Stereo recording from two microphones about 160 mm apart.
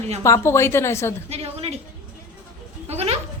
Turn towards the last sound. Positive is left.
turn(degrees=-40)  # may be behind; listen again after turning